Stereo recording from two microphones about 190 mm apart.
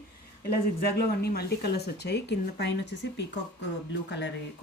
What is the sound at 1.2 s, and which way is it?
A woman's voice, 55° left (ahead or behind).